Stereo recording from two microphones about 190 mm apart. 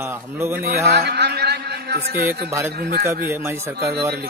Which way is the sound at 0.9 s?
60° right (ahead or behind).